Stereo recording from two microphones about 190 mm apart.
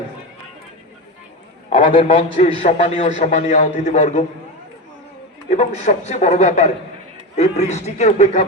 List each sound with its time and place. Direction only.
2.1 s a man's voice: 30° left (ahead or behind)
5.5 s a man's voice: 35° left (ahead or behind)